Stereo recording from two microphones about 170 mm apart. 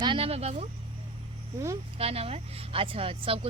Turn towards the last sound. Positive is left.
turn(degrees=-35)  # may be behind; listen again after turning